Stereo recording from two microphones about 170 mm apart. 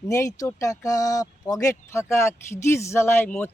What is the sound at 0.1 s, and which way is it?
Speech, 20° left (ahead or behind).